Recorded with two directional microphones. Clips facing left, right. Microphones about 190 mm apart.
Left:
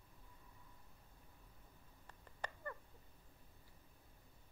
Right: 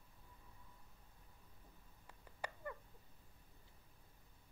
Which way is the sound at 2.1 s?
10° right (ahead or behind).